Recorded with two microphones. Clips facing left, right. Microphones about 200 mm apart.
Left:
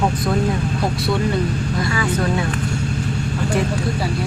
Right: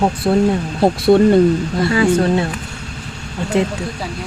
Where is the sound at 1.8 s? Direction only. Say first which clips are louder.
Right 9 dB; 30° right (ahead or behind).